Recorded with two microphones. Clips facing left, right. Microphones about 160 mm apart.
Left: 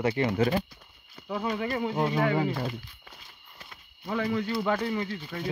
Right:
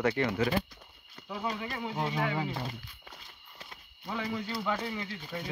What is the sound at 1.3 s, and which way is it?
Speech, 60° left (ahead or behind).